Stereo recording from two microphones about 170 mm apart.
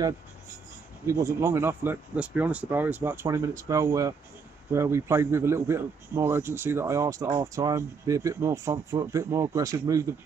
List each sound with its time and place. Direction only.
1.0 s a man's voice: 15° right (ahead or behind)